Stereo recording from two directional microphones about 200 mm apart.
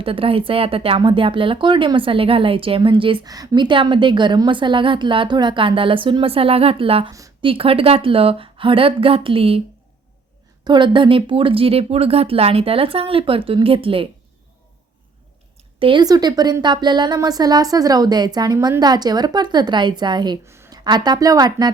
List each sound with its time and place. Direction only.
0.0 s a woman's voice: 25° right (ahead or behind)
7.1 s a woman's voice: 15° right (ahead or behind)
7.5 s a woman's voice: 30° right (ahead or behind)
10.6 s a woman's voice: 25° right (ahead or behind)
15.8 s a woman's voice: 25° right (ahead or behind)